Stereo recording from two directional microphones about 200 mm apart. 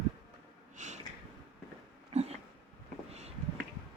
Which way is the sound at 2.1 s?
35° right (ahead or behind).